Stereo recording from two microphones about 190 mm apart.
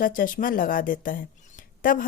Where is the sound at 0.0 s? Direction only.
45° left (ahead or behind).